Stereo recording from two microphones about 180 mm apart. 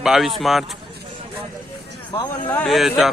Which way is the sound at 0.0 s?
Centre (ahead or behind).